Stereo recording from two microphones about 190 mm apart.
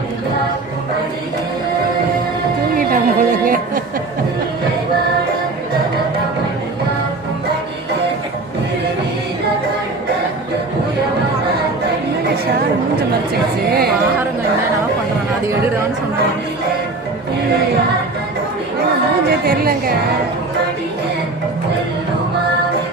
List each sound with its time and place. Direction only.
2.7 s music: 45° right (ahead or behind)
13.7 s speech: 55° right (ahead or behind)
19.3 s a woman's voice: 55° right (ahead or behind)